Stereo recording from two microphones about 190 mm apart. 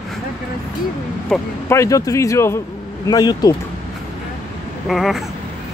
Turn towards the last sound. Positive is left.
turn(degrees=0)  # may be behind; listen again after turning